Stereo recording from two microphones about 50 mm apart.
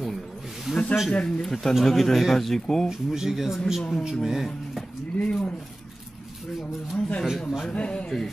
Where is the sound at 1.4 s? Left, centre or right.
Centre.